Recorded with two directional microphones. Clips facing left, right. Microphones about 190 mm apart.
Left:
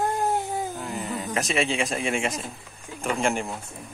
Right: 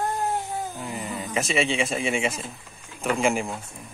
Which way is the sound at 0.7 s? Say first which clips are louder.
Left 1 dB; centre (ahead or behind).